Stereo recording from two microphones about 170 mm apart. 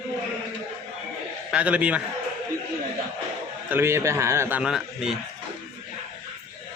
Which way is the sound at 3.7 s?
15° right (ahead or behind).